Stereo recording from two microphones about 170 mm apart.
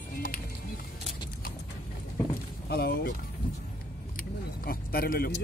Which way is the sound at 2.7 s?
70° left (ahead or behind).